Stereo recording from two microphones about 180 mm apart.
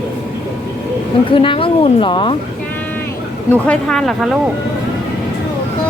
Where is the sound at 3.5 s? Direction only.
5° left (ahead or behind).